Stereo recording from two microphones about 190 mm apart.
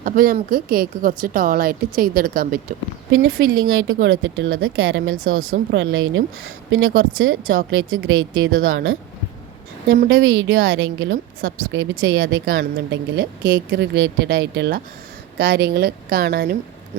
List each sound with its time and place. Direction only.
0.0 s a woman's voice: 50° right (ahead or behind)
3.1 s speech: 90° right
9.9 s a woman's voice: 75° right (ahead or behind)
11.6 s a woman's voice: 80° right
12.3 s a woman's voice: 70° right (ahead or behind)